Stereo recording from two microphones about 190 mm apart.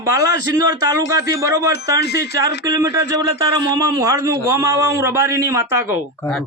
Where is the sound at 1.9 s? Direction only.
60° left (ahead or behind).